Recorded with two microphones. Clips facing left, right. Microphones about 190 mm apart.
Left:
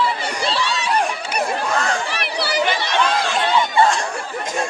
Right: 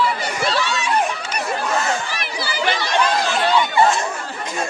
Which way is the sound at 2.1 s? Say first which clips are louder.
Left 3 dB; 65° left (ahead or behind).